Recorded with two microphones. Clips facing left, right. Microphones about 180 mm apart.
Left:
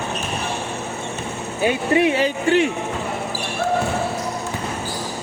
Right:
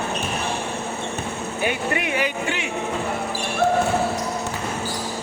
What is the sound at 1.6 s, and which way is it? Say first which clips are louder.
Speech: left 7 dB; 25° left (ahead or behind).